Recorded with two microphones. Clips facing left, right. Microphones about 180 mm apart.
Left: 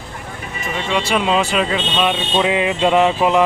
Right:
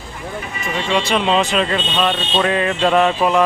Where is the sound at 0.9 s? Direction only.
10° left (ahead or behind).